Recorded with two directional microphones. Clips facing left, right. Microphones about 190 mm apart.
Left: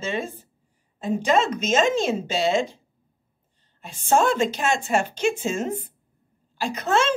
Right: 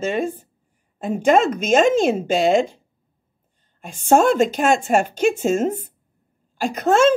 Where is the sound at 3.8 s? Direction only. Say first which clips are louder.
Right 5 dB; 45° right (ahead or behind).